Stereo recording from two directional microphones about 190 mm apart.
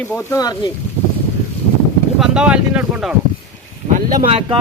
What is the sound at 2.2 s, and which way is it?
Speech, 5° right (ahead or behind).